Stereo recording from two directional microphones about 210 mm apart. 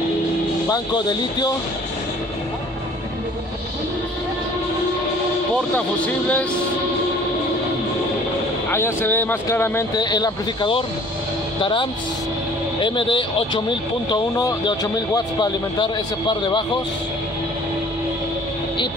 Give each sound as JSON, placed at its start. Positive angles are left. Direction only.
{"t": 0.7, "sound": "speech", "side_deg": 20}
{"t": 8.6, "sound": "speech", "side_deg": 10}